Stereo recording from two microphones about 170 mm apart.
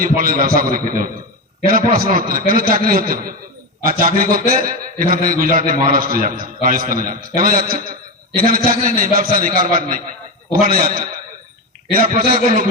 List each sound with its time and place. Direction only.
0.0 s a man's voice: 55° right (ahead or behind)
12.1 s a man's voice: 45° right (ahead or behind)